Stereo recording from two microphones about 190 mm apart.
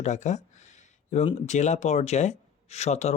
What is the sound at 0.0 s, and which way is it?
Speech, 40° left (ahead or behind).